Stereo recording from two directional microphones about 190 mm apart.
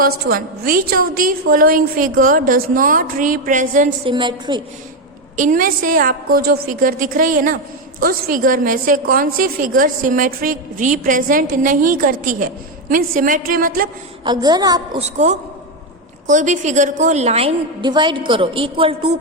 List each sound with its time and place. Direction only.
0.0 s a woman's voice: 50° right (ahead or behind)
4.1 s a woman's voice: 25° right (ahead or behind)
5.4 s a woman's voice: 45° right (ahead or behind)
14.3 s a woman's voice: 20° right (ahead or behind)
15.0 s a woman's voice: 35° right (ahead or behind)